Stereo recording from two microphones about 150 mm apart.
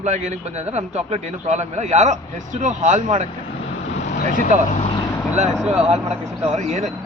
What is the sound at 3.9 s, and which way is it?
Speech, 50° left (ahead or behind).